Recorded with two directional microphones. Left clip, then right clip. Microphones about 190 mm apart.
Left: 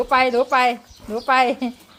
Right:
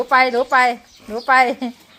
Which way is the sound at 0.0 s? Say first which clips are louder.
Right 2 dB; 10° right (ahead or behind).